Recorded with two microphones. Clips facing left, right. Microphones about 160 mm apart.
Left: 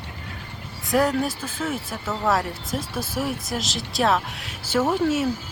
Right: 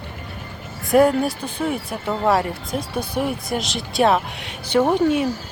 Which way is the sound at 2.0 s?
15° right (ahead or behind).